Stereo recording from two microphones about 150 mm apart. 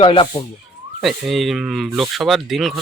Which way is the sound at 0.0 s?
35° left (ahead or behind).